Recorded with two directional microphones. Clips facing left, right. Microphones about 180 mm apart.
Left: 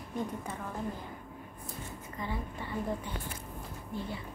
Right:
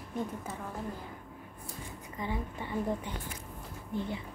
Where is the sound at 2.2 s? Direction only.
15° right (ahead or behind).